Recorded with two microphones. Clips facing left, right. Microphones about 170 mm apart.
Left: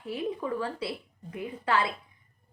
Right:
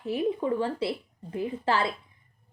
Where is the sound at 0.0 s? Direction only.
25° right (ahead or behind).